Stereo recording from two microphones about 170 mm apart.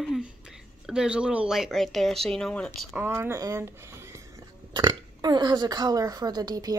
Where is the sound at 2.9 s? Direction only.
15° right (ahead or behind).